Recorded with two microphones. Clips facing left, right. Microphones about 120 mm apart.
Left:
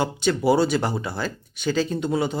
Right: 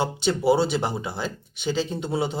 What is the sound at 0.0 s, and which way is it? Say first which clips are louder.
Speech: left 1 dB; 25° right (ahead or behind).